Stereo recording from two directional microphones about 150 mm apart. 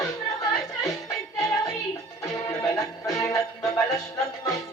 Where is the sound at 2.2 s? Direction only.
25° left (ahead or behind).